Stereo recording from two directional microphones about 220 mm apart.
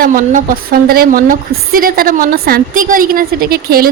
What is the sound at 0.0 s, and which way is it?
A woman's voice, 40° right (ahead or behind).